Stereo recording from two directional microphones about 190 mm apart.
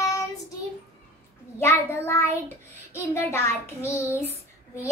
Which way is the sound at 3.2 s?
15° left (ahead or behind).